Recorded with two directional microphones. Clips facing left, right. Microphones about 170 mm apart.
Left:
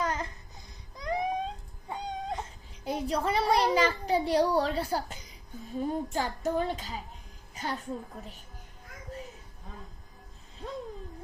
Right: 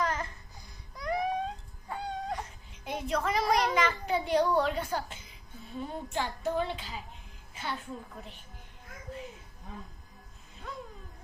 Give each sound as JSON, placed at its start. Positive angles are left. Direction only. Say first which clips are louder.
{"t": 0.0, "sound": "music", "louder": "even", "side_deg": 20}
{"t": 0.9, "sound": "a sound", "louder": "even", "side_deg": 20}
{"t": 1.9, "sound": "music", "louder": "even", "side_deg": 20}
{"t": 2.8, "sound": "a child's voice", "louder": "left 2 dB", "side_deg": 35}